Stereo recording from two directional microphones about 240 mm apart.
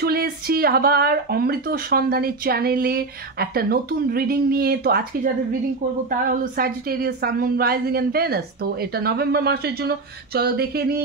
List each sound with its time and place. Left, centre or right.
0.0 s speech: right